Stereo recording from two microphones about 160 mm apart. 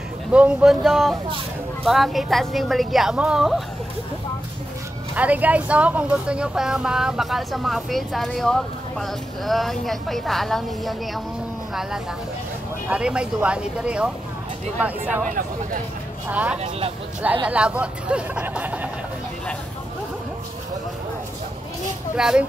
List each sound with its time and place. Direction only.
0.3 s a woman's voice: 5° right (ahead or behind)
5.1 s a woman's voice: 10° right (ahead or behind)
12.9 s speech: 5° right (ahead or behind)
15.2 s speech: 60° right (ahead or behind)
16.3 s speech: 10° right (ahead or behind)
16.5 s speech: 40° right (ahead or behind)
17.5 s speech: 5° right (ahead or behind)
22.1 s speech: 5° right (ahead or behind)